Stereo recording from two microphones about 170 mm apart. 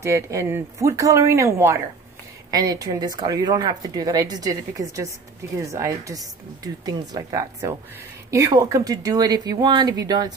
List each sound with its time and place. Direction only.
0.0 s speech: 15° right (ahead or behind)